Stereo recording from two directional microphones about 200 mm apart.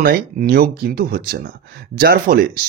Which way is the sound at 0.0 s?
45° right (ahead or behind).